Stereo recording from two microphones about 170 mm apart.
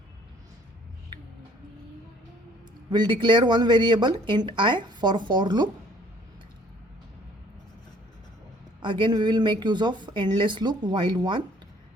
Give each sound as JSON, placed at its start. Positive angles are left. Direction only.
{"t": 2.9, "sound": "speech", "side_deg": -25}
{"t": 8.8, "sound": "speech", "side_deg": -30}